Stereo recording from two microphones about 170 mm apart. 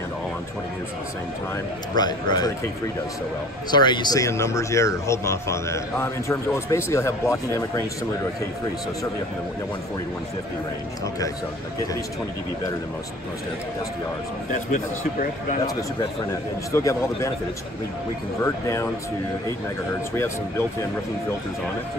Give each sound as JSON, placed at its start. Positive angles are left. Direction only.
{"t": 2.0, "sound": "speech", "side_deg": 25}
{"t": 3.7, "sound": "speech", "side_deg": 25}
{"t": 14.5, "sound": "a man's voice", "side_deg": 50}
{"t": 16.7, "sound": "speech", "side_deg": 15}
{"t": 18.4, "sound": "speech", "side_deg": 15}